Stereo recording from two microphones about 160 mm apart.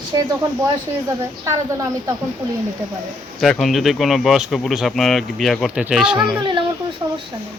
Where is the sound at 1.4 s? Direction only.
20° right (ahead or behind).